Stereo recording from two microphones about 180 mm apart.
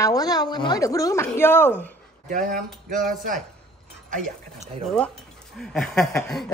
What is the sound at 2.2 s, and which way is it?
Speech, 50° right (ahead or behind).